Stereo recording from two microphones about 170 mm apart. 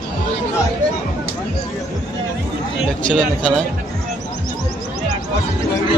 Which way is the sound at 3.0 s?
5° left (ahead or behind).